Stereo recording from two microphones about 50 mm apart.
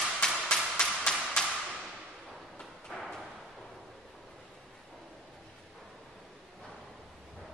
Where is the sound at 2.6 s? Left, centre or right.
Centre.